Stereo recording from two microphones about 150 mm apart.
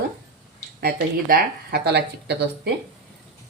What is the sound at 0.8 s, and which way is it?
Speech, 90° right.